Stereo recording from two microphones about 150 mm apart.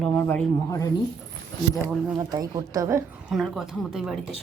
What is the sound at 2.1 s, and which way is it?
Speech, 25° right (ahead or behind).